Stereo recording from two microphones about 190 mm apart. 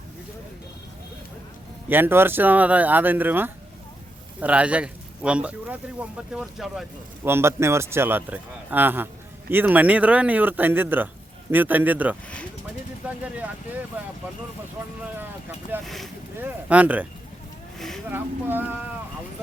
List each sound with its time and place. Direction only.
1.9 s speech: 10° right (ahead or behind)
7.3 s speech: 15° right (ahead or behind)
14.8 s speech: 10° right (ahead or behind)
15.8 s speech: centre (ahead or behind)
17.7 s vehicle: centre (ahead or behind)
18.1 s speech: 10° right (ahead or behind)